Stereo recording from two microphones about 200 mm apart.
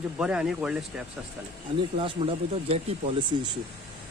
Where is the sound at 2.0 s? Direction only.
25° right (ahead or behind).